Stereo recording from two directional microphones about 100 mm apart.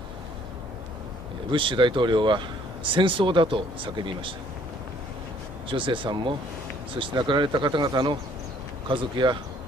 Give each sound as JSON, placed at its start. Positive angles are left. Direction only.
{"t": 1.5, "sound": "speech", "side_deg": -55}
{"t": 5.7, "sound": "speech", "side_deg": -55}